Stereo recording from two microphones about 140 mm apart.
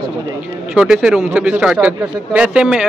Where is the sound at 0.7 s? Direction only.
5° right (ahead or behind).